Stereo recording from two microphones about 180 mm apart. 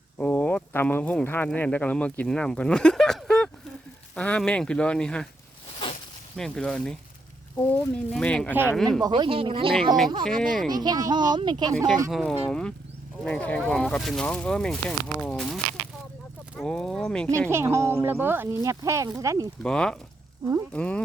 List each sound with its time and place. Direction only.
0.2 s speech: 10° left (ahead or behind)
6.3 s speech: 5° left (ahead or behind)
9.0 s speech: 25° right (ahead or behind)
9.7 s speech: centre (ahead or behind)
10.7 s speech: 20° right (ahead or behind)
12.1 s speech: 5° left (ahead or behind)
17.5 s speech: 15° right (ahead or behind)
19.6 s speech: 5° left (ahead or behind)